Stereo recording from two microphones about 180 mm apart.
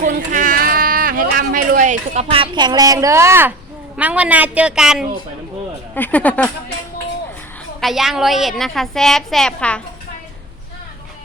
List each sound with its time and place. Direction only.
0.0 s a sound: 45° right (ahead or behind); by 3.5 s 15° right (ahead or behind)
3.9 s a woman's voice: 5° right (ahead or behind)
5.9 s speech: 10° left (ahead or behind)
7.8 s a woman's voice: centre (ahead or behind)